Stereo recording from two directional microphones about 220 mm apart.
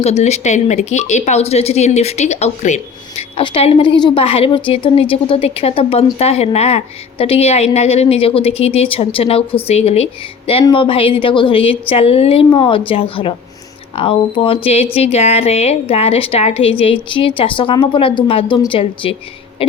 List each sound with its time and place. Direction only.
0.0 s speech: 30° left (ahead or behind)